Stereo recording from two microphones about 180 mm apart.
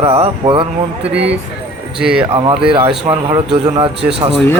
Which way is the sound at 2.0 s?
5° right (ahead or behind).